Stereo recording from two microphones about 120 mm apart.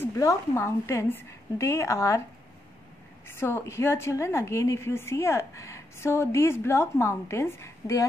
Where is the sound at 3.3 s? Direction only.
20° left (ahead or behind).